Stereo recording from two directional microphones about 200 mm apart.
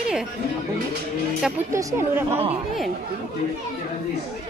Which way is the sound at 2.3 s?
30° right (ahead or behind).